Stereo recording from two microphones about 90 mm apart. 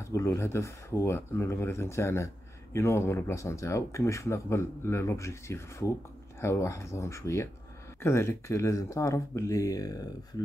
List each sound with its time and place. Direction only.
0.0 s speech: 30° left (ahead or behind)